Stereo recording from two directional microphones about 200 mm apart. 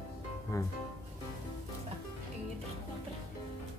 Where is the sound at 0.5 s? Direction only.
15° left (ahead or behind).